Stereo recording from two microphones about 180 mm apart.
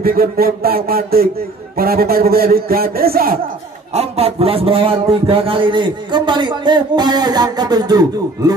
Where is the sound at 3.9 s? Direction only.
35° right (ahead or behind).